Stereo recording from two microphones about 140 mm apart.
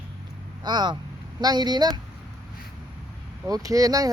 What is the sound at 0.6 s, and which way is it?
A child's voice, 30° right (ahead or behind).